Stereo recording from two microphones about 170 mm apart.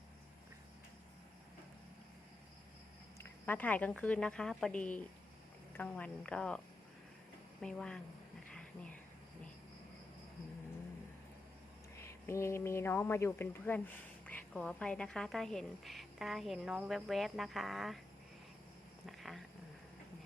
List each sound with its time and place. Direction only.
3.2 s a woman's voice: 10° left (ahead or behind)
7.6 s speech: 5° left (ahead or behind)
8.4 s a sound: 5° left (ahead or behind)
11.9 s a woman's voice: 15° left (ahead or behind); by 18.0 s centre (ahead or behind)
19.0 s cat: centre (ahead or behind)